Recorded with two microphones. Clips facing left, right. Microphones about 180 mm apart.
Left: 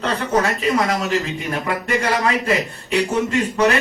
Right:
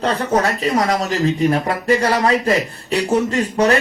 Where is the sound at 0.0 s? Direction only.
35° right (ahead or behind).